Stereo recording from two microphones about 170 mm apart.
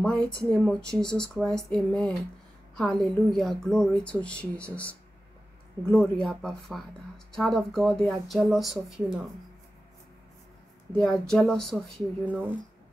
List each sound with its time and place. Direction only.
0.0 s speech: 5° left (ahead or behind)
11.0 s speech: 5° left (ahead or behind)
12.3 s speech: 10° right (ahead or behind)